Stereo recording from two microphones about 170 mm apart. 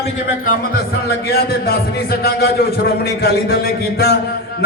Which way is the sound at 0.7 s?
65° left (ahead or behind).